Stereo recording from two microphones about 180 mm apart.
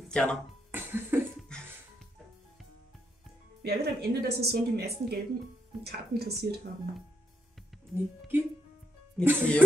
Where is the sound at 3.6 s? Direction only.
60° right (ahead or behind).